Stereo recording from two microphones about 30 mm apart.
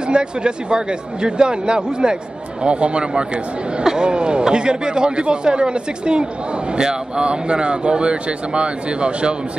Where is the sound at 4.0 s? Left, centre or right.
Right.